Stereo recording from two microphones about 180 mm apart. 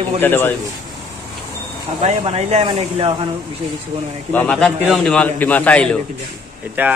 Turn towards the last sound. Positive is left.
turn(degrees=-10)  # may be behind; listen again after turning